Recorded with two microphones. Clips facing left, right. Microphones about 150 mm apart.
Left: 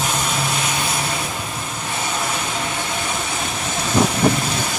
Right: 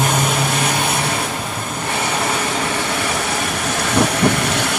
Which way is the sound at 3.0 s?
80° right.